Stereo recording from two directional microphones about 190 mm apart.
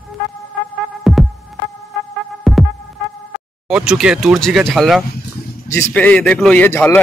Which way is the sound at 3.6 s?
5° right (ahead or behind).